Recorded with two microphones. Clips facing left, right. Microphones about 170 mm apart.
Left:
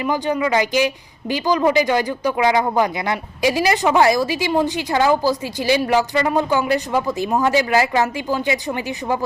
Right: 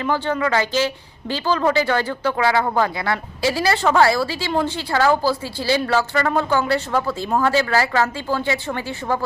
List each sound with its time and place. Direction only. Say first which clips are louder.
0.0 s speech: left 1 dB; 15° left (ahead or behind)